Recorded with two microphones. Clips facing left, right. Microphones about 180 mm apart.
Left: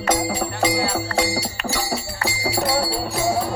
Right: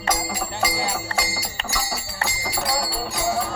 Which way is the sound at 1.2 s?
30° left (ahead or behind).